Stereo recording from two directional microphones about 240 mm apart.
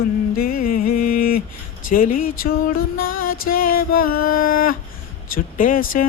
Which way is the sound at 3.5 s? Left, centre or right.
Left.